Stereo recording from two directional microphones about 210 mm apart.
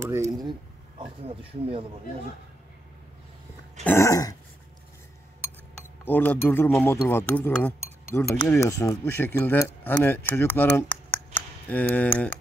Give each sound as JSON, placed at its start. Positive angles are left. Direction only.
{"t": 0.0, "sound": "speech", "side_deg": -15}
{"t": 3.8, "sound": "speech", "side_deg": 15}
{"t": 6.0, "sound": "speech", "side_deg": 10}